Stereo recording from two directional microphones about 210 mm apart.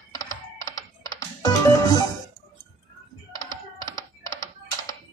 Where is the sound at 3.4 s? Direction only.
20° right (ahead or behind).